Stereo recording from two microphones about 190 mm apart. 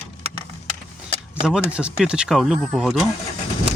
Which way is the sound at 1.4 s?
Centre (ahead or behind).